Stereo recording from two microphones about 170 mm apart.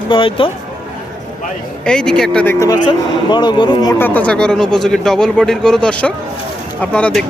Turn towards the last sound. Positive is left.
turn(degrees=5)  # may be behind; listen again after turning